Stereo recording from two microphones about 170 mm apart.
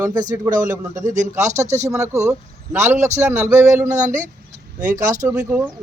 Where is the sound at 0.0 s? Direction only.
25° right (ahead or behind).